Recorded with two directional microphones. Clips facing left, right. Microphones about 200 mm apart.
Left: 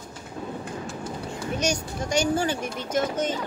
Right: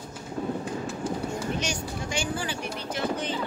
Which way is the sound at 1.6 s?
40° left (ahead or behind).